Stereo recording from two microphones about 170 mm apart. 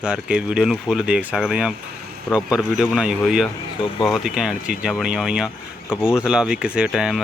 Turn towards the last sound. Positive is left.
turn(degrees=0)  # may be behind; listen again after turning